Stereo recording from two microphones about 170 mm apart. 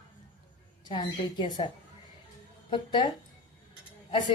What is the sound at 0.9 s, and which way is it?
A woman's voice, 25° left (ahead or behind).